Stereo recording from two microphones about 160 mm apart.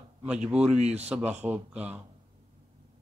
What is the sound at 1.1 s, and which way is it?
Speech, 10° right (ahead or behind).